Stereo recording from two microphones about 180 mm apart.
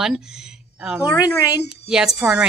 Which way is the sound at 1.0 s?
15° left (ahead or behind).